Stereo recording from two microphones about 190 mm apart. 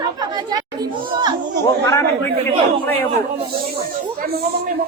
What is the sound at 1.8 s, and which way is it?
Speech, 15° left (ahead or behind).